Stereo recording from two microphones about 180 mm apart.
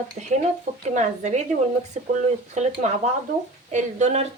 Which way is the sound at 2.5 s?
40° right (ahead or behind).